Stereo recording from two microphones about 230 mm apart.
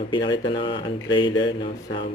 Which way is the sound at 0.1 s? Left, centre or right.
Left.